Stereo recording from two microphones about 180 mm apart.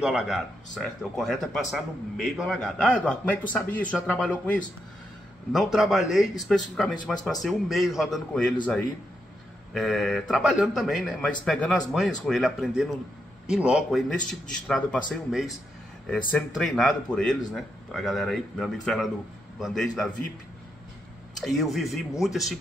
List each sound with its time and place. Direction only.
0.0 s speech: 5° right (ahead or behind)
9.8 s speech: centre (ahead or behind)
21.4 s speech: centre (ahead or behind)